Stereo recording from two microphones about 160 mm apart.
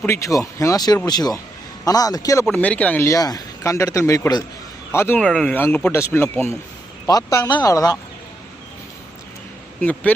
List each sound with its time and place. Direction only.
0.0 s speech: 15° left (ahead or behind)
2.5 s speech: 10° left (ahead or behind)
9.8 s speech: 10° left (ahead or behind)